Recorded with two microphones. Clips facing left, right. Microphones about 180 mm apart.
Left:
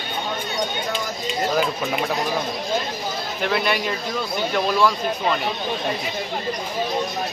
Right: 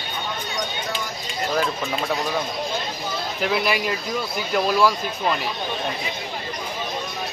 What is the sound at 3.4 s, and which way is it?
A man's voice, 5° right (ahead or behind).